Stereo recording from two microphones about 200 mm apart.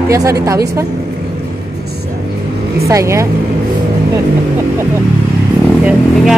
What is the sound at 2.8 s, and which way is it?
Speech, 15° right (ahead or behind).